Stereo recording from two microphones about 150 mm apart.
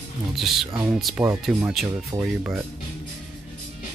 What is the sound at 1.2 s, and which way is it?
Speech, 15° right (ahead or behind).